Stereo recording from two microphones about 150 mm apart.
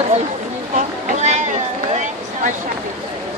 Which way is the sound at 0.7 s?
50° right (ahead or behind).